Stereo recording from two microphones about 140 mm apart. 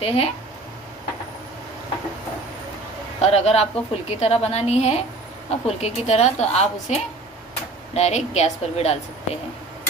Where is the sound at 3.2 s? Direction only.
45° left (ahead or behind).